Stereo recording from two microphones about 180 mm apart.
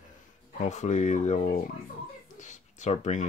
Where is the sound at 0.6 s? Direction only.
40° left (ahead or behind).